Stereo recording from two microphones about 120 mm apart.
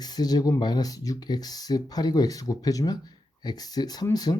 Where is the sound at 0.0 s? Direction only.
35° left (ahead or behind).